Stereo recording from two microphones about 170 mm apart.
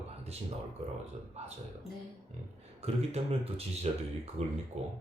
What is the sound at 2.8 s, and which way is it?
Speech, 35° right (ahead or behind).